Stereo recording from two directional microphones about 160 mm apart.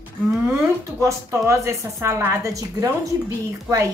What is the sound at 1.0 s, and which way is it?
A child's voice, 15° right (ahead or behind).